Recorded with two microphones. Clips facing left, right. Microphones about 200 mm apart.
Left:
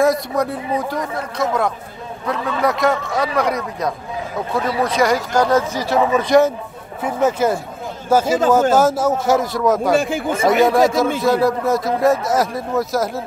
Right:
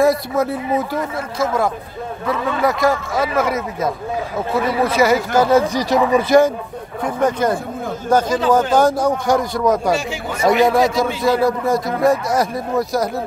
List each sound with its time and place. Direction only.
0.0 s speech: centre (ahead or behind)
6.1 s speech: centre (ahead or behind)
9.9 s speech: 50° left (ahead or behind)
10.5 s speech: centre (ahead or behind)